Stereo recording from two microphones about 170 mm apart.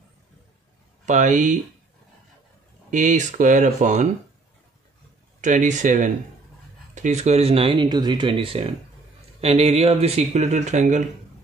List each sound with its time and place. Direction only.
1.0 s speech: 45° right (ahead or behind)
2.9 s speech: 45° right (ahead or behind)
5.4 s speech: 45° right (ahead or behind)